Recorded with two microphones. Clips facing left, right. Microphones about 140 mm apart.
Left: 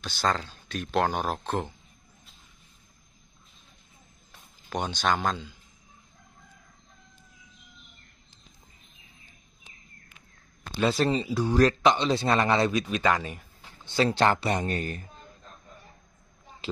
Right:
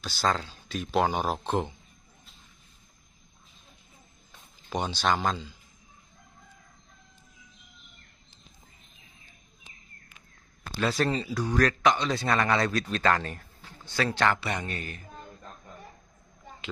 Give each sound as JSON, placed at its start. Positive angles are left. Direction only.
{"t": 0.0, "sound": "speech", "side_deg": -5}
{"t": 4.8, "sound": "speech", "side_deg": -5}
{"t": 10.8, "sound": "speech", "side_deg": 20}
{"t": 13.8, "sound": "speech", "side_deg": 25}